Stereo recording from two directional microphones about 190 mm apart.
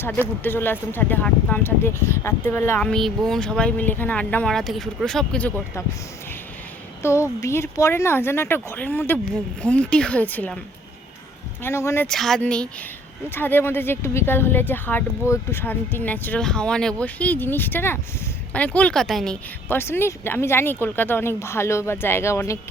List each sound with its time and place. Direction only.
0.4 s speech: 10° left (ahead or behind)
7.0 s speech: 15° left (ahead or behind)
11.6 s speech: 15° left (ahead or behind)
12.0 s speech: centre (ahead or behind)